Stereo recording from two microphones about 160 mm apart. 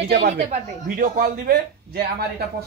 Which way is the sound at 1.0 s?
70° right (ahead or behind).